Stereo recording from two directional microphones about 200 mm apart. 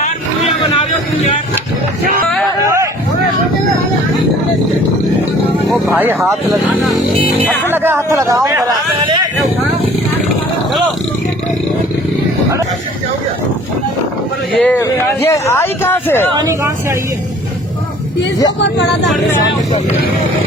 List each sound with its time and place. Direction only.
2.6 s a sound: 15° right (ahead or behind)
5.6 s speech: 10° right (ahead or behind)
7.7 s speech: 10° right (ahead or behind)
9.0 s a sound: 25° right (ahead or behind)
14.5 s a man's voice: 5° left (ahead or behind)
16.3 s speech: 15° right (ahead or behind)